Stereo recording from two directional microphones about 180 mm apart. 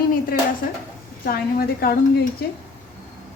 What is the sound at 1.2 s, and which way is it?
Speech, 55° left (ahead or behind).